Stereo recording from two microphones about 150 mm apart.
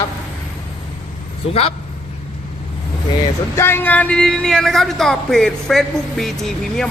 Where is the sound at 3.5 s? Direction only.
15° left (ahead or behind).